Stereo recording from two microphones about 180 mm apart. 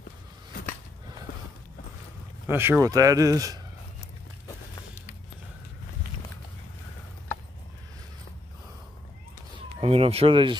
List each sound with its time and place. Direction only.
2.4 s speech: 10° right (ahead or behind)
9.8 s speech: 30° right (ahead or behind)